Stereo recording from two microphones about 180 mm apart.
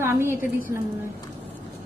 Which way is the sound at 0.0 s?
15° right (ahead or behind).